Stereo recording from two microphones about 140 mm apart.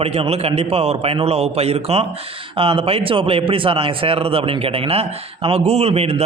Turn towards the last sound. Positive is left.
turn(degrees=-50)  # may be behind; listen again after turning